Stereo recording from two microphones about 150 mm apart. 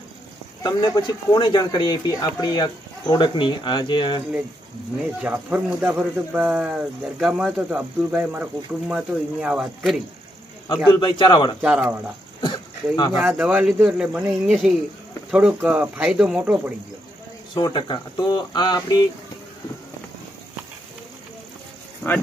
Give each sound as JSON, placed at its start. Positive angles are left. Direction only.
{"t": 0.6, "sound": "speech", "side_deg": 30}
{"t": 5.2, "sound": "speech", "side_deg": -10}
{"t": 10.9, "sound": "speech", "side_deg": 35}
{"t": 11.6, "sound": "speech", "side_deg": -5}
{"t": 12.4, "sound": "dog", "side_deg": 30}
{"t": 13.2, "sound": "speech", "side_deg": -10}
{"t": 17.6, "sound": "speech", "side_deg": 30}